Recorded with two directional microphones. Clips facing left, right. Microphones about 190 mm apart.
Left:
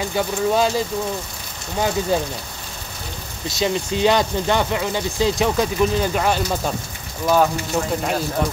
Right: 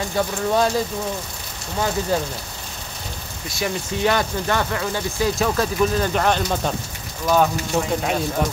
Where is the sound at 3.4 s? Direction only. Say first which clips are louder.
Left 4 dB; 20° left (ahead or behind); by 8.2 s centre (ahead or behind).